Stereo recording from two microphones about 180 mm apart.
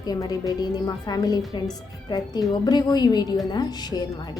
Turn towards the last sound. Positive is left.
turn(degrees=20)  # may be behind; listen again after turning